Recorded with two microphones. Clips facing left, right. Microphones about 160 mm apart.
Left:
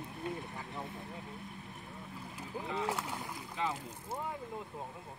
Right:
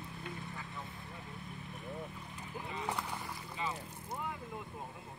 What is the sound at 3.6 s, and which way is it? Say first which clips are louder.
Speech: left 4 dB; 75° left (ahead or behind).